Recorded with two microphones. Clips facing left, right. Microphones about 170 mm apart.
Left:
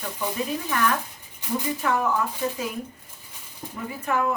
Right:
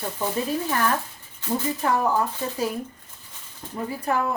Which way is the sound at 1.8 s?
35° right (ahead or behind).